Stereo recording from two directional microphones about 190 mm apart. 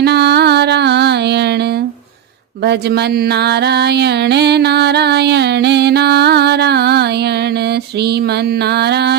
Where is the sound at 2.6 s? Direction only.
60° right (ahead or behind).